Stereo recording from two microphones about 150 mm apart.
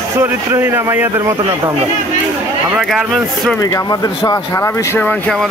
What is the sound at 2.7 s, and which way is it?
Speech, 5° right (ahead or behind).